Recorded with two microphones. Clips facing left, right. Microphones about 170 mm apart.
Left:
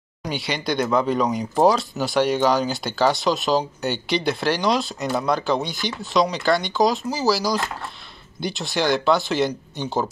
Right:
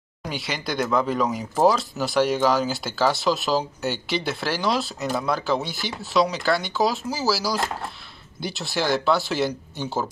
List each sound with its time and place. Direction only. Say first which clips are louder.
0.2 s speech: left 3 dB; centre (ahead or behind)